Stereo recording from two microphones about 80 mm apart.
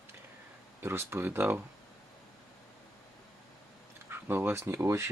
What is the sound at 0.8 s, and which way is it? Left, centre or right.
Speech, right.